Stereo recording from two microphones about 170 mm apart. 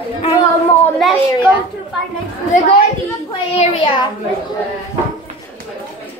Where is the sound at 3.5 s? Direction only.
40° left (ahead or behind).